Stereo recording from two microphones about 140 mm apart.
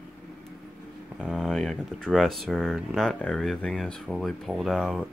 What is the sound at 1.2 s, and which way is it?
Speech, centre (ahead or behind).